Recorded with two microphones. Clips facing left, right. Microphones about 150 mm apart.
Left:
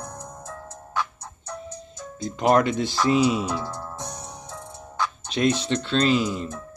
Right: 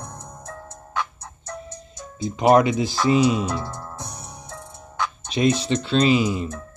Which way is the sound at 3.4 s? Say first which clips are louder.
Right 1 dB; 10° left (ahead or behind).